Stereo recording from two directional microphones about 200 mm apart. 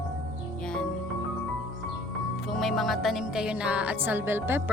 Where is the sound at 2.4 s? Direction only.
Centre (ahead or behind).